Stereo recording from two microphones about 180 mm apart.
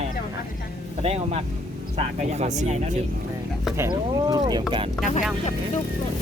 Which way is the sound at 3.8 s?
20° right (ahead or behind).